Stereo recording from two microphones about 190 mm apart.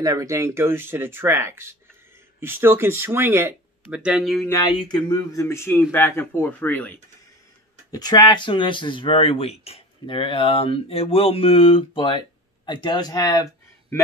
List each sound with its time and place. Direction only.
0.0 s speech: 20° right (ahead or behind); by 4.5 s centre (ahead or behind)
4.7 s speech: 25° left (ahead or behind)
7.9 s speech: 20° left (ahead or behind)